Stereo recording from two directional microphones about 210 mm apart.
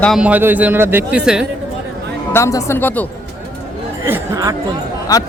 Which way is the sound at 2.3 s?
15° left (ahead or behind).